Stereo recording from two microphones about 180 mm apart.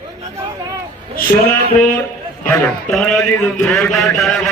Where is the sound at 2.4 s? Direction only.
10° left (ahead or behind).